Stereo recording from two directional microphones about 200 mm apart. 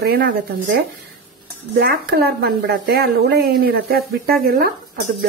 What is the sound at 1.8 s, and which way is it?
Speech, 50° right (ahead or behind).